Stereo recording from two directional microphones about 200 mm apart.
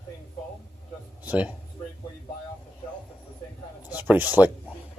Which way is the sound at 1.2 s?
10° right (ahead or behind).